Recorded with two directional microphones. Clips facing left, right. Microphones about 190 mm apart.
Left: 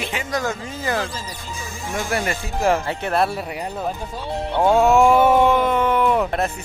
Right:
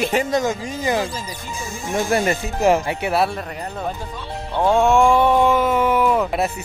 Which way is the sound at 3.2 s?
5° left (ahead or behind).